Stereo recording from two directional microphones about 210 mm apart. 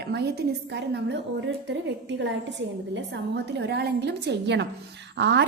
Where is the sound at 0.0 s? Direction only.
50° right (ahead or behind).